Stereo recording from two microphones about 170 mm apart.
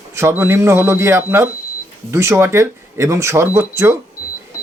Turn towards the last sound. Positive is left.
turn(degrees=-15)  # may be behind; listen again after turning